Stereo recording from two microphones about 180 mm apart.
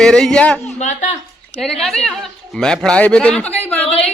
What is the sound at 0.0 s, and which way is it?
Speech, 5° left (ahead or behind).